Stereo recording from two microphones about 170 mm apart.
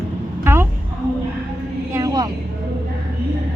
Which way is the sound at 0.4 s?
15° right (ahead or behind).